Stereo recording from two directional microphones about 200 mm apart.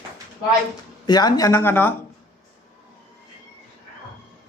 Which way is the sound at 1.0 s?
20° left (ahead or behind).